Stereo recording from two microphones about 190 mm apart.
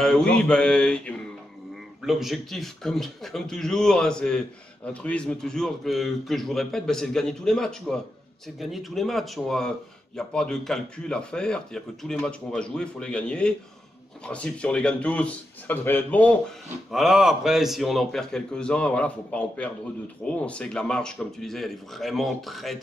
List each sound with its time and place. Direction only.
0.0 s a man's voice: 5° left (ahead or behind)